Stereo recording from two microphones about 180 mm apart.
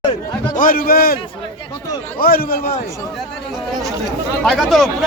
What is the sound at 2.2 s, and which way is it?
Speech, 55° left (ahead or behind).